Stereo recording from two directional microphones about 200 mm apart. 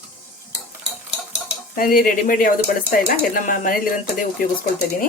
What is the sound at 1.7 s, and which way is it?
Speech, 45° left (ahead or behind).